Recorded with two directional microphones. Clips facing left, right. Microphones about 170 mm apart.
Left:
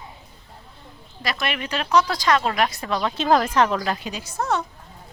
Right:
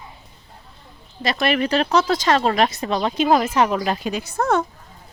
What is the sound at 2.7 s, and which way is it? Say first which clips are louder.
Speech: right 3 dB; 20° right (ahead or behind).